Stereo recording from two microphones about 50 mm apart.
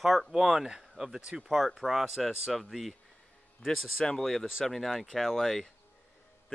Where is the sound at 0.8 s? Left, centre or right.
Centre.